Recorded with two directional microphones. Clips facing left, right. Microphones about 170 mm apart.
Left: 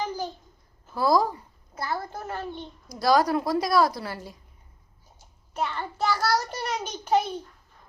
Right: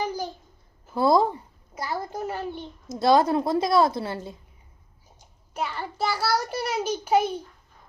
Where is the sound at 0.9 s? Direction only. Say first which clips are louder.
Right 2 dB; 25° right (ahead or behind).